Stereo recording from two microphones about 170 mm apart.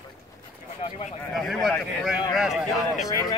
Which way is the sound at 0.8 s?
40° left (ahead or behind).